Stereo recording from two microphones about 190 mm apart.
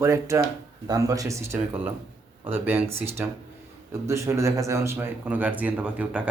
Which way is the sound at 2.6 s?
10° right (ahead or behind).